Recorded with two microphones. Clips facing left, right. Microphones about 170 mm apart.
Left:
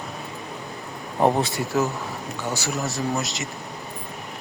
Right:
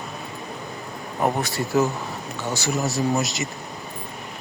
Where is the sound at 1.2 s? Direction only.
25° left (ahead or behind).